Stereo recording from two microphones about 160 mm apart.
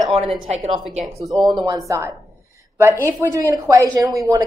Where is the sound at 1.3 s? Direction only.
25° right (ahead or behind).